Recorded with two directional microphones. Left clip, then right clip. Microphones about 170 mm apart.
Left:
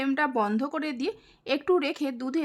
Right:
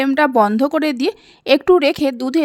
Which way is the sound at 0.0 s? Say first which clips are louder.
Right 12 dB; 45° right (ahead or behind).